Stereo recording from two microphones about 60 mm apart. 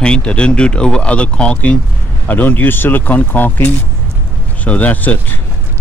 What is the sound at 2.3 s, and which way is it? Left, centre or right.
Speech, left.